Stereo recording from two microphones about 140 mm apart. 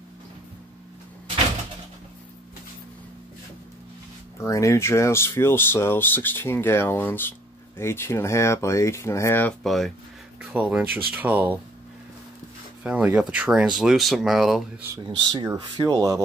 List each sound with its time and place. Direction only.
4.4 s speech: 20° left (ahead or behind)
9.6 s speech: centre (ahead or behind)
10.4 s speech: 10° right (ahead or behind)
12.8 s speech: 10° right (ahead or behind)
15.4 s speech: 30° right (ahead or behind)